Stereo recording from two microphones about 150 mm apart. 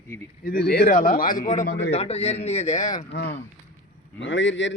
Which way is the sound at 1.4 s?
50° left (ahead or behind).